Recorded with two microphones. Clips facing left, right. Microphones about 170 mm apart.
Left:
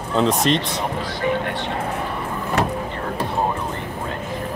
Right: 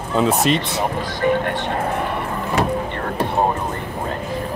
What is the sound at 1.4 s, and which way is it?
Speech, 50° right (ahead or behind).